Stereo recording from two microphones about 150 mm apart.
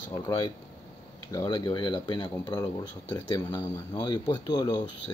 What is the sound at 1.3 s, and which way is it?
Speech, 30° left (ahead or behind).